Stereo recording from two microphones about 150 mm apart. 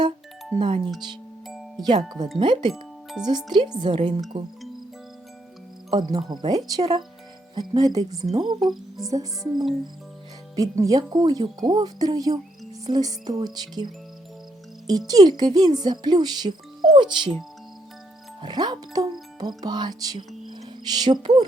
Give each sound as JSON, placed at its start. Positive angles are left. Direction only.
{"t": 1.5, "sound": "music", "side_deg": 0}
{"t": 1.8, "sound": "speech", "side_deg": -30}
{"t": 5.9, "sound": "speech", "side_deg": -25}
{"t": 8.6, "sound": "speech", "side_deg": 0}
{"t": 9.0, "sound": "speech", "side_deg": -25}
{"t": 18.4, "sound": "speech", "side_deg": -30}
{"t": 19.4, "sound": "music", "side_deg": -25}